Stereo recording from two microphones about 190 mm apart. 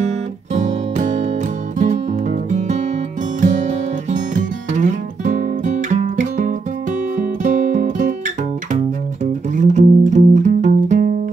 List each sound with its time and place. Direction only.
0.0 s music: 40° right (ahead or behind)